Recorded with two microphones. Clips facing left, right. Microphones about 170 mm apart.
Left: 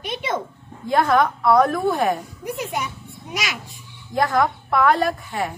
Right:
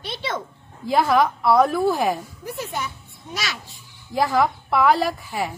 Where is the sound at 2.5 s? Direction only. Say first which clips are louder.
Left 3 dB; 20° left (ahead or behind).